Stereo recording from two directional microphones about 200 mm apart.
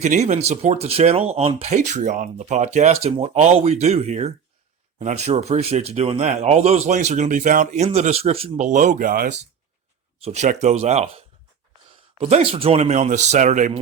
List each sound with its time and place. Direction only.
0.0 s speech: 35° right (ahead or behind)
10.2 s speech: 35° right (ahead or behind)
12.2 s speech: 30° right (ahead or behind)